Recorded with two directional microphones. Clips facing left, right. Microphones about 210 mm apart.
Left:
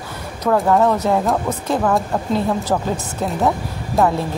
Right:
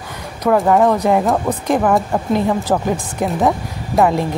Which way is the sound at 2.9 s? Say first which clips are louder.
Right 3 dB; 15° right (ahead or behind).